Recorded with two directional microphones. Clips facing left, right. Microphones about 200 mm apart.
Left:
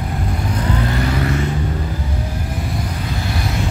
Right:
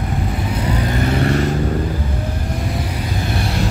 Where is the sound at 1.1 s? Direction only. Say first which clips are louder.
Right 3 dB; 35° right (ahead or behind).